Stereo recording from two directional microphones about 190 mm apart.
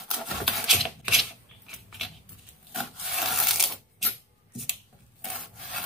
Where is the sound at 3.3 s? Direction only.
Centre (ahead or behind).